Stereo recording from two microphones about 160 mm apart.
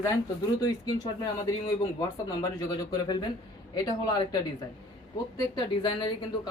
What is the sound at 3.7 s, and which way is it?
Speech, 25° left (ahead or behind).